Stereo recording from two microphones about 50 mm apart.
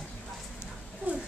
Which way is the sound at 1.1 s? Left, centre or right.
Right.